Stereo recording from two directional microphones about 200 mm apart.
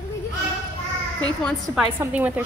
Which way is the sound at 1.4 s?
Centre (ahead or behind).